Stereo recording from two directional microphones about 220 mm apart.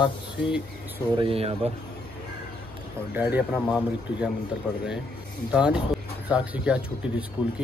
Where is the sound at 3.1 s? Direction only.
5° right (ahead or behind).